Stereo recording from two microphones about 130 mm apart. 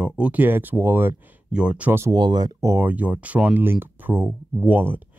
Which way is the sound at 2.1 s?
35° right (ahead or behind).